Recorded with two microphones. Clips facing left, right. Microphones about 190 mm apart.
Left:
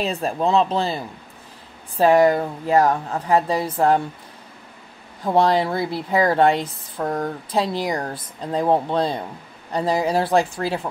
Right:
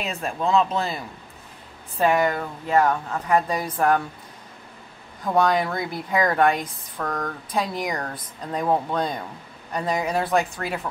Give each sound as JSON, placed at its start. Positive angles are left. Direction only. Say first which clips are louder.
{"t": 0.0, "sound": "a woman's voice", "louder": "left 5 dB", "side_deg": 35}
{"t": 5.2, "sound": "a woman's voice", "louder": "left 3 dB", "side_deg": 30}